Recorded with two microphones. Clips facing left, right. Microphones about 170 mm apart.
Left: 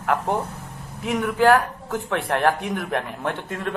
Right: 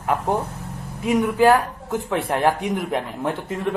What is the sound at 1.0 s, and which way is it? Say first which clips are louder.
Speech: right 2 dB; 15° right (ahead or behind).